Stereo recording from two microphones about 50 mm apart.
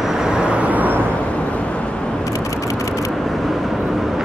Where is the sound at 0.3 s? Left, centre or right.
Right.